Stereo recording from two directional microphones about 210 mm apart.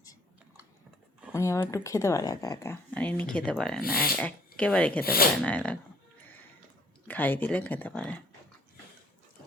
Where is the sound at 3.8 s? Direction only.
45° left (ahead or behind).